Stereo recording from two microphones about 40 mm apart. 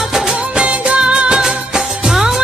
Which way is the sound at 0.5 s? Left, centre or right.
Right.